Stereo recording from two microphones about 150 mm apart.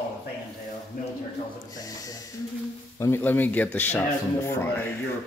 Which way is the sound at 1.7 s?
25° left (ahead or behind).